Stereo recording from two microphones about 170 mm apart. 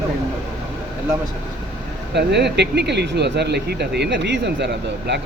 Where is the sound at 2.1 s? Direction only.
80° right.